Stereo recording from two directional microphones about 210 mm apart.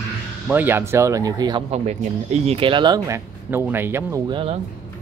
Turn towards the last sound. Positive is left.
turn(degrees=-25)  # may be behind; listen again after turning